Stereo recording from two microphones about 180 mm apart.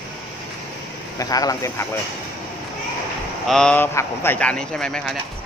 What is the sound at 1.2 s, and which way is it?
Speech, 20° left (ahead or behind).